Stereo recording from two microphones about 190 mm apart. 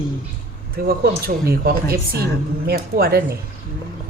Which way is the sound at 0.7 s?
50° right (ahead or behind).